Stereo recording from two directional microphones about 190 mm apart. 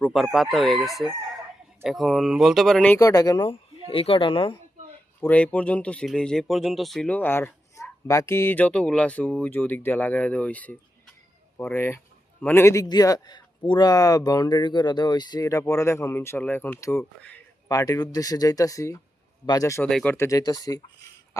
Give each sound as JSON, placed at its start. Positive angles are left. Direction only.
{"t": 0.0, "sound": "speech", "side_deg": 0}
{"t": 3.0, "sound": "speech", "side_deg": 20}
{"t": 5.2, "sound": "speech", "side_deg": 10}
{"t": 19.9, "sound": "speech", "side_deg": 5}
{"t": 20.1, "sound": "speech", "side_deg": 15}